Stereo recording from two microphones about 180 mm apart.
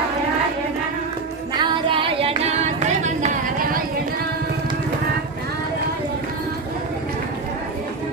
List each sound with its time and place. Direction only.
1.6 s singing: 30° right (ahead or behind)